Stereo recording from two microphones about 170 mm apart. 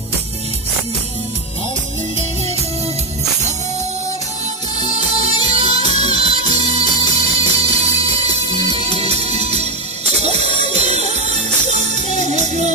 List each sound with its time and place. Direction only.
5.4 s music: 35° right (ahead or behind)